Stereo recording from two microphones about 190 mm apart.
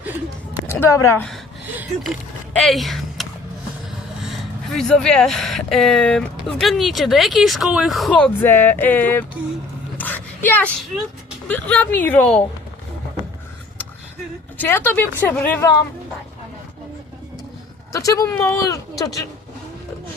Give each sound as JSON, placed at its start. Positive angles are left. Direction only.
{"t": 0.7, "sound": "speech", "side_deg": 15}
{"t": 1.7, "sound": "a sound", "side_deg": -10}
{"t": 2.6, "sound": "speech", "side_deg": 0}
{"t": 10.0, "sound": "a sound", "side_deg": 10}
{"t": 11.4, "sound": "speech", "side_deg": 5}
{"t": 14.6, "sound": "speech", "side_deg": 10}
{"t": 17.9, "sound": "speech", "side_deg": 20}